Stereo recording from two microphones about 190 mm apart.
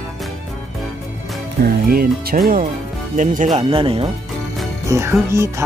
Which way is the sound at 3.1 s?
40° right (ahead or behind).